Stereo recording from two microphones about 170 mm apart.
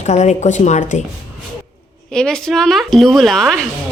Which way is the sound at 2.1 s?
5° left (ahead or behind).